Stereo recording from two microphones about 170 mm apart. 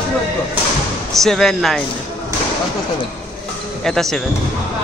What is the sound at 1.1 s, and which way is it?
Speech, centre (ahead or behind).